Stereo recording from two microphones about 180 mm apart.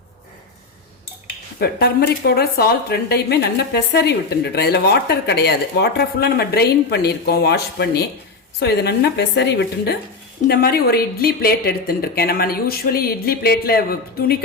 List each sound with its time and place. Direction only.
1.5 s speech: 60° left (ahead or behind)
10.5 s speech: 60° left (ahead or behind)